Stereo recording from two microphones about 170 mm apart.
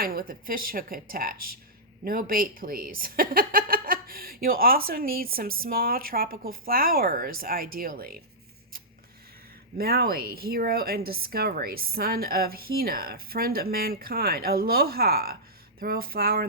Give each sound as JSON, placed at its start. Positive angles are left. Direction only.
{"t": 0.0, "sound": "speech", "side_deg": -60}
{"t": 9.7, "sound": "speech", "side_deg": -65}